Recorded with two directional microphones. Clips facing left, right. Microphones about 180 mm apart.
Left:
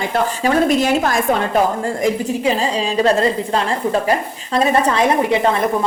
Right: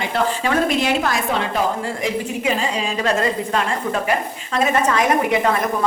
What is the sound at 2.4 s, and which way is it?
A woman's voice, 30° left (ahead or behind).